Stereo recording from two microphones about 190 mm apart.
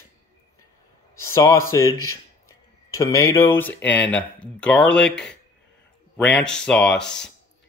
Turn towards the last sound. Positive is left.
turn(degrees=5)  # may be behind; listen again after turning